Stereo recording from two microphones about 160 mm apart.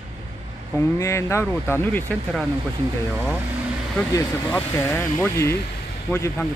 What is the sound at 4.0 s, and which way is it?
Speech, 15° left (ahead or behind).